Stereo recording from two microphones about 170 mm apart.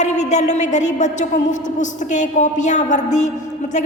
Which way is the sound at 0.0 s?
45° left (ahead or behind).